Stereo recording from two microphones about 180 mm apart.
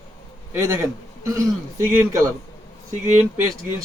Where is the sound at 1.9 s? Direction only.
15° right (ahead or behind).